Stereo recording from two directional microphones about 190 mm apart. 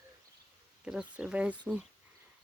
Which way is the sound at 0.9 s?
5° right (ahead or behind).